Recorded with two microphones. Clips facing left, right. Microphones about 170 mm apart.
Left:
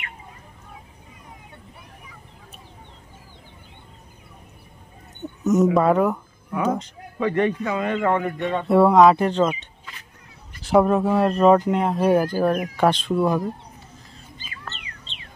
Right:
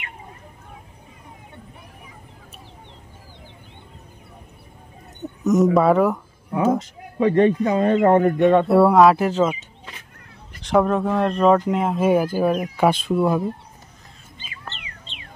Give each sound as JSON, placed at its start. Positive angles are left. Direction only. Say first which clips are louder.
{"t": 5.4, "sound": "speech", "louder": "right 1 dB", "side_deg": 0}
{"t": 7.2, "sound": "a man's voice", "louder": "right 5 dB", "side_deg": -30}
{"t": 8.6, "sound": "speech", "louder": "left 4 dB", "side_deg": -5}